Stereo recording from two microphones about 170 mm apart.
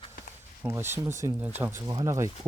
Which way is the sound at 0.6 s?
15° right (ahead or behind).